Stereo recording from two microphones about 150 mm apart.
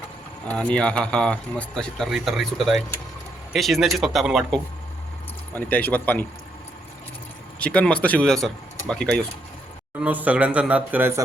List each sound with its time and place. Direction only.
0.4 s a man's voice: 5° left (ahead or behind)
5.5 s speech: 10° left (ahead or behind)
7.6 s speech: 10° left (ahead or behind)
10.0 s speech: 10° right (ahead or behind)